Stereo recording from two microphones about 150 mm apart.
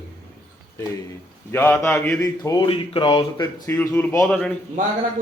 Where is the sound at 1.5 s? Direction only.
15° left (ahead or behind).